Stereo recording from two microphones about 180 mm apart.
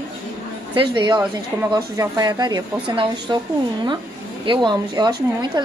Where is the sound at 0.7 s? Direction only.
25° right (ahead or behind).